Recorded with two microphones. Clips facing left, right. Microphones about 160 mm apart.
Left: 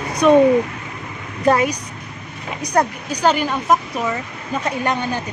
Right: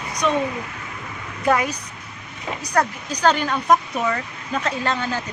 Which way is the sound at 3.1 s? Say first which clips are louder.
Left 2 dB; 10° left (ahead or behind).